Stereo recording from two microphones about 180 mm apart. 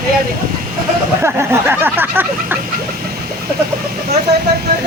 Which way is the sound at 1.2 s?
10° right (ahead or behind).